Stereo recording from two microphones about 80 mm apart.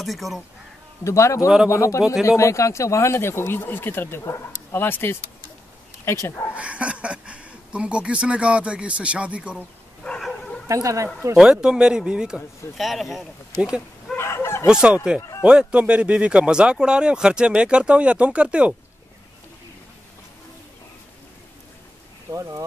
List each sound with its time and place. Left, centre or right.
0.0 s speech: centre
1.0 s speech: left
6.5 s speech: centre
10.0 s bow-wow: centre
10.7 s speech: right
11.3 s speech: centre
13.6 s speech: centre
14.1 s chicken: left
14.7 s speech: centre
22.3 s speech: right